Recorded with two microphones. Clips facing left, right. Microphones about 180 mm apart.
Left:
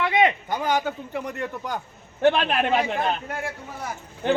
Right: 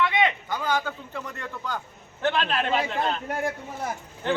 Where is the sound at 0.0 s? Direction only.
35° left (ahead or behind).